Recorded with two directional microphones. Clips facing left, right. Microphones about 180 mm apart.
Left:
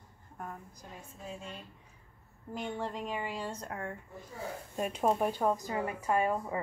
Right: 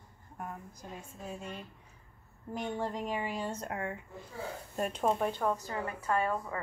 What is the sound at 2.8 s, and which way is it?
Speech, 15° right (ahead or behind).